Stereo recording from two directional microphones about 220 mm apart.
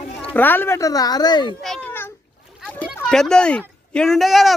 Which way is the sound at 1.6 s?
5° left (ahead or behind).